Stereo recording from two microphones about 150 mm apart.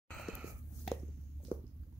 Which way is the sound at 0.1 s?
Centre (ahead or behind).